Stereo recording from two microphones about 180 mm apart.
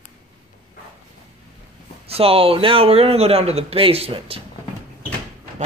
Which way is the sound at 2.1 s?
30° right (ahead or behind).